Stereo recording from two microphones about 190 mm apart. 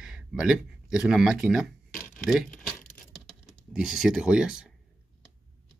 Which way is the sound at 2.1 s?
5° left (ahead or behind).